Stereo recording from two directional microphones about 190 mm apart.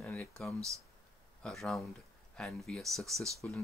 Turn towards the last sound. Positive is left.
turn(degrees=0)  # may be behind; listen again after turning